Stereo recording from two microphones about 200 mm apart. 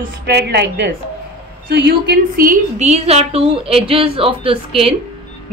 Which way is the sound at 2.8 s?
30° right (ahead or behind).